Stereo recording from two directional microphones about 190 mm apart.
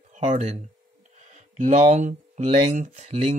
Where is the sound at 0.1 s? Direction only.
35° right (ahead or behind).